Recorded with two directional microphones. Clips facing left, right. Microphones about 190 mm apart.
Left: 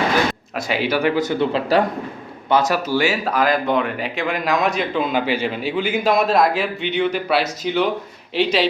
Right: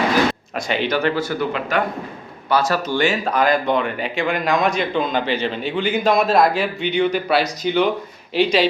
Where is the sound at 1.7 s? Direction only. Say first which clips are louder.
Left 5 dB; 35° left (ahead or behind).